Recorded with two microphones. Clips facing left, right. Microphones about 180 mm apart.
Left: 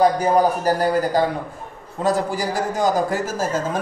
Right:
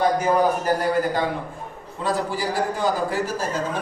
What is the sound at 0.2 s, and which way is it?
A man's voice, 35° left (ahead or behind).